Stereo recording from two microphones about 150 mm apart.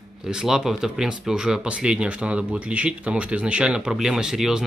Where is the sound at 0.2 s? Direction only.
5° right (ahead or behind).